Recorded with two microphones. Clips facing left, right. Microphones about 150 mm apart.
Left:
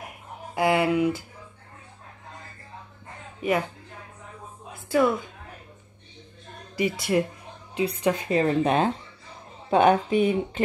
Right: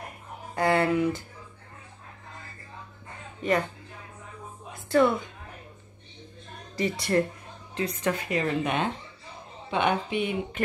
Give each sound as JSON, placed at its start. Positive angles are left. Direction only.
{"t": 0.6, "sound": "speech", "side_deg": 10}
{"t": 3.4, "sound": "speech", "side_deg": 10}
{"t": 6.8, "sound": "speech", "side_deg": 10}
{"t": 8.3, "sound": "speech", "side_deg": 35}